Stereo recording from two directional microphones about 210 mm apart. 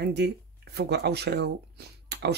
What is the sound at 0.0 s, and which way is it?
Speech, 50° right (ahead or behind).